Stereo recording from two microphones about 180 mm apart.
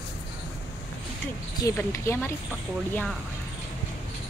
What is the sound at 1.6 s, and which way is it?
Speech, 15° left (ahead or behind).